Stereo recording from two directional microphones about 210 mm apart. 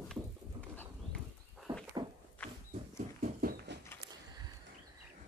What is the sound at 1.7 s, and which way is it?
Dog, 25° right (ahead or behind).